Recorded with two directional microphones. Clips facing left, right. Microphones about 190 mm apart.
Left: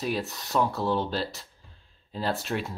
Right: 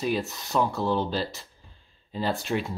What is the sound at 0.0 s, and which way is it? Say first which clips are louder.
Speech: right 2 dB; centre (ahead or behind).